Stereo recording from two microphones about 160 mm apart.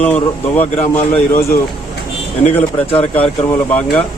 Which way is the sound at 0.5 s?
45° left (ahead or behind).